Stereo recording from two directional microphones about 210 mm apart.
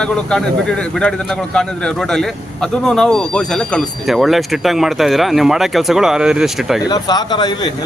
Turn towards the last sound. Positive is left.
turn(degrees=20)  # may be behind; listen again after turning